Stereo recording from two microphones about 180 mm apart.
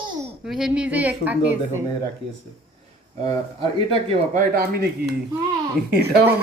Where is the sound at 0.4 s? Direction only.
5° right (ahead or behind).